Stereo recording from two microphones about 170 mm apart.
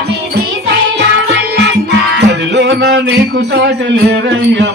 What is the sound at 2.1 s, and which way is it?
Music, 90° right.